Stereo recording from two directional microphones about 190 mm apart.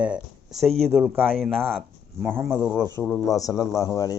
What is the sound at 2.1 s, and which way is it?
Speech, 10° right (ahead or behind).